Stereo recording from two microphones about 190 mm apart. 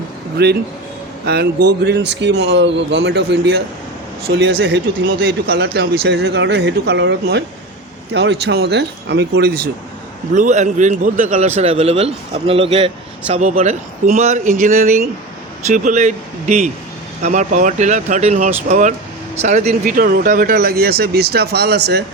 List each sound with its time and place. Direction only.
0.4 s speech: 60° right (ahead or behind)
10.3 s a man's voice: 40° right (ahead or behind); by 22.0 s 60° right (ahead or behind)